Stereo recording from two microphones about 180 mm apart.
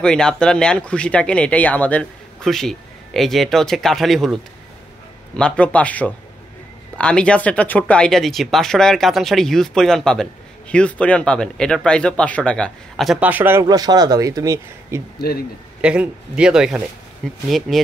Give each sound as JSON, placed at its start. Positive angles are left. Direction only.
{"t": 0.0, "sound": "speech", "side_deg": 5}
{"t": 15.1, "sound": "speech", "side_deg": 60}
{"t": 15.8, "sound": "speech", "side_deg": -5}